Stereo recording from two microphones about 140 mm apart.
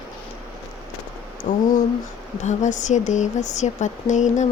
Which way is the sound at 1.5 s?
75° left (ahead or behind).